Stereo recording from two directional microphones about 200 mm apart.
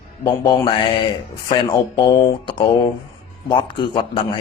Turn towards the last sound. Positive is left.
turn(degrees=25)  # may be behind; listen again after turning